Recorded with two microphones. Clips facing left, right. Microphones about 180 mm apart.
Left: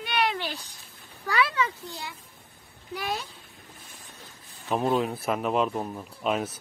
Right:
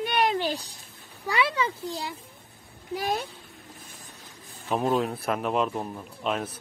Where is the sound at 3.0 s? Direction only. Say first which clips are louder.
Right 3 dB; 55° right (ahead or behind).